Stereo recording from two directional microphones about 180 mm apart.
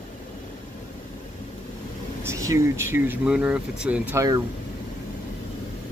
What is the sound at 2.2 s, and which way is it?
Speech, 15° right (ahead or behind).